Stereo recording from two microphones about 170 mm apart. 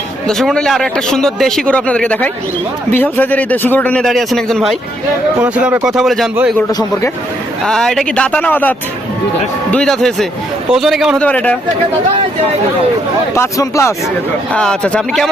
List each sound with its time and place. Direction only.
0.3 s a man's voice: centre (ahead or behind)
6.7 s a man's voice: 20° left (ahead or behind)
7.6 s a man's voice: centre (ahead or behind)
9.7 s a man's voice: 5° left (ahead or behind)
13.3 s a man's voice: 15° left (ahead or behind)
14.5 s speech: 5° left (ahead or behind)